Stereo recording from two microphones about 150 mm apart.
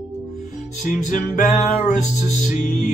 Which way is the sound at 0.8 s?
60° left (ahead or behind).